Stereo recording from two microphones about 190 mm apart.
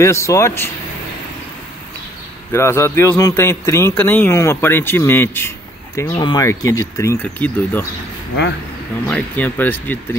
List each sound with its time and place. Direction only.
0.0 s a man's voice: 15° left (ahead or behind)
2.5 s a man's voice: 15° left (ahead or behind)
6.1 s a man's voice: 20° left (ahead or behind)
9.0 s a man's voice: 10° left (ahead or behind)